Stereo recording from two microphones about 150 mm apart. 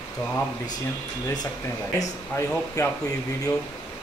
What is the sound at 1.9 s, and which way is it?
Speech, 20° left (ahead or behind).